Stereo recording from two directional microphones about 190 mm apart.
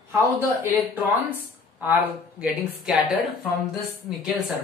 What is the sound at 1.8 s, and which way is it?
Speech, 10° right (ahead or behind).